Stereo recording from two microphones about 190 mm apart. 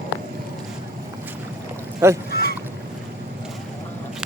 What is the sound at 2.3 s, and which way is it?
Boat, 55° left (ahead or behind).